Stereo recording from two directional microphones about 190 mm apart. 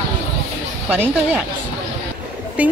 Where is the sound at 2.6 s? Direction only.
10° right (ahead or behind).